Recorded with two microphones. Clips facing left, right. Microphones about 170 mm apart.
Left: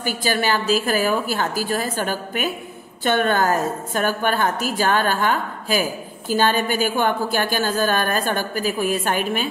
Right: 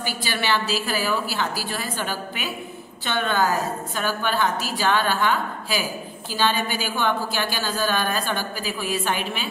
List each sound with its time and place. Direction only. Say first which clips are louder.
0.0 s a woman's voice: left 5 dB; 45° left (ahead or behind)